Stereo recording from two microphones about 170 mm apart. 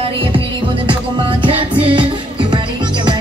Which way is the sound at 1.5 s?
30° right (ahead or behind).